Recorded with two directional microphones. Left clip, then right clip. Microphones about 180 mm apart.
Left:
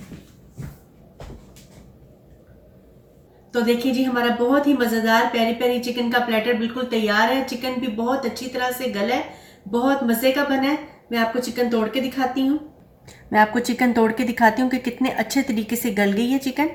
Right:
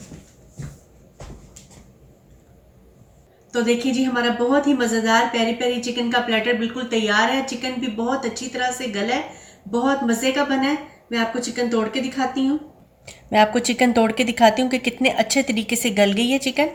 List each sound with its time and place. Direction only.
3.5 s a woman's voice: centre (ahead or behind)
13.1 s a woman's voice: 45° right (ahead or behind)